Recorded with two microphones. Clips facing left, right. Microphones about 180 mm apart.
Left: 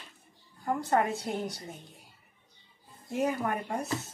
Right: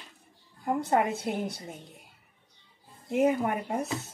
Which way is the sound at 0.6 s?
15° right (ahead or behind).